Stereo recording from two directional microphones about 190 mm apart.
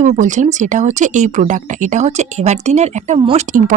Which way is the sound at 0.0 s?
40° right (ahead or behind).